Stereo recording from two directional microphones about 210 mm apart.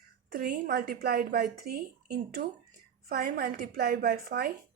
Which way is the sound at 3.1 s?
45° right (ahead or behind).